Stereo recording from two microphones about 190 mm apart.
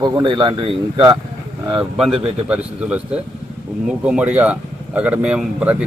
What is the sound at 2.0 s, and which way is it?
Speech, 5° right (ahead or behind).